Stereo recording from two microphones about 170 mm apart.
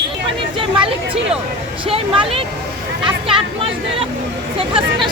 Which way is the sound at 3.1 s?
30° right (ahead or behind).